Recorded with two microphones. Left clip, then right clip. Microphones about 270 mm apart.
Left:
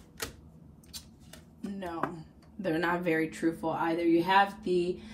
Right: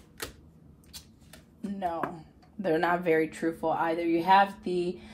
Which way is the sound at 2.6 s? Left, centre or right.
Right.